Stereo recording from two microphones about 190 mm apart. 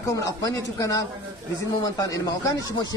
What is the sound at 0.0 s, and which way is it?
A man's voice, 15° left (ahead or behind).